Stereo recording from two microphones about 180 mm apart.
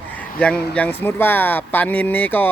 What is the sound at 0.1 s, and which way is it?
Speech, 10° left (ahead or behind).